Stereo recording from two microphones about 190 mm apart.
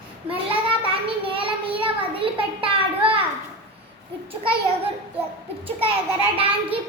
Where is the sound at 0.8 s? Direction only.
30° right (ahead or behind).